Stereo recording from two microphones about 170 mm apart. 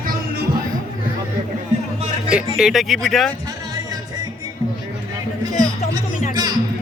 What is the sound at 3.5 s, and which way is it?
Music, 20° right (ahead or behind).